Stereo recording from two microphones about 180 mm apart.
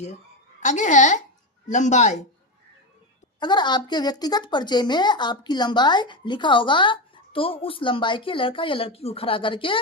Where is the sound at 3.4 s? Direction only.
25° left (ahead or behind).